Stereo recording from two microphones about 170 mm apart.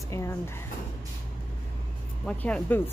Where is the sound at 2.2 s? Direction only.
10° left (ahead or behind).